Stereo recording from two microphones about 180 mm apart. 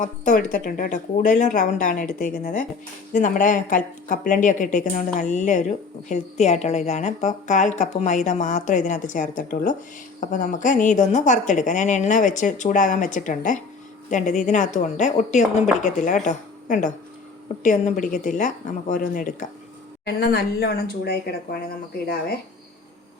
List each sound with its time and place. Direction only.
0.0 s speech: 45° left (ahead or behind)
20.1 s speech: 60° left (ahead or behind)